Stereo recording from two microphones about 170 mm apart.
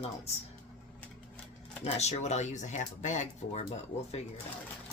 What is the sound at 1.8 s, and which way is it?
Speech, 40° left (ahead or behind).